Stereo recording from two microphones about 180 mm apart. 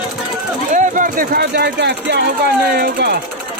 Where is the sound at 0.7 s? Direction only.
45° right (ahead or behind); by 2.2 s 65° right (ahead or behind).